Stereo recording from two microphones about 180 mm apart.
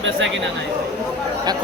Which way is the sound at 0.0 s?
90° right.